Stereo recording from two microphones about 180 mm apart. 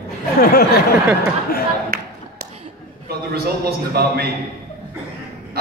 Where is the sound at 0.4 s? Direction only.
55° left (ahead or behind).